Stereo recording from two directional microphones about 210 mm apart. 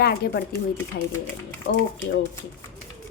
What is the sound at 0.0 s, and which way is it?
Speech, 50° left (ahead or behind).